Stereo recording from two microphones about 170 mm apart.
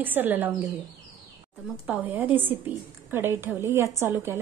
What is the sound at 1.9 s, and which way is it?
A woman's voice, 10° right (ahead or behind).